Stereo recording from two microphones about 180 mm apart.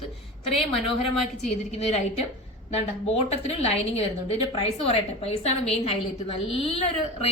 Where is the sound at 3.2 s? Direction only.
35° left (ahead or behind).